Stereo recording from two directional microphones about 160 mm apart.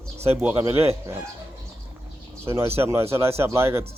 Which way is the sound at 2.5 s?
15° right (ahead or behind).